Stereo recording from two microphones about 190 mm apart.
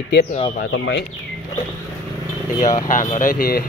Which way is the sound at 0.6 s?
70° left (ahead or behind).